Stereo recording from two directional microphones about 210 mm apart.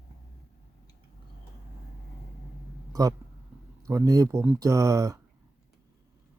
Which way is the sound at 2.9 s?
15° right (ahead or behind).